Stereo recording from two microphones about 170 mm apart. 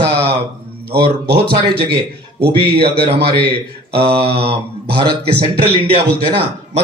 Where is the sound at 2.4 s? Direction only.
70° right (ahead or behind).